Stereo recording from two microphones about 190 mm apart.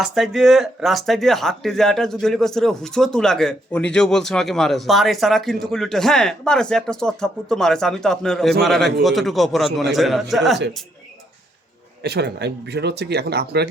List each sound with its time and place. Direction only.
0.0 s speech: centre (ahead or behind)
12.0 s speech: 60° right (ahead or behind)